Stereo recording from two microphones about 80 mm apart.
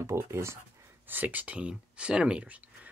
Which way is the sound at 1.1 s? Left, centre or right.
Right.